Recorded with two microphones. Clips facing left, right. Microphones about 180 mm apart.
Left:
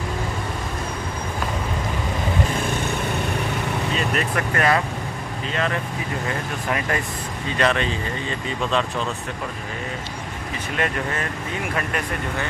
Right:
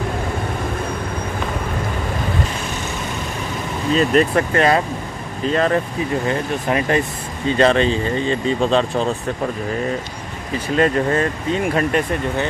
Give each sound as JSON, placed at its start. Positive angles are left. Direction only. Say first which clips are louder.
{"t": 3.9, "sound": "speech", "louder": "right 12 dB", "side_deg": -35}
{"t": 5.5, "sound": "speech", "louder": "right 8 dB", "side_deg": -40}
{"t": 6.2, "sound": "speech", "louder": "right 6 dB", "side_deg": -25}
{"t": 10.8, "sound": "speech", "louder": "right 9 dB", "side_deg": -30}